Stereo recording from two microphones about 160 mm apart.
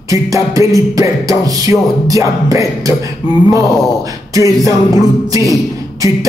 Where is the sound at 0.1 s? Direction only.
20° right (ahead or behind).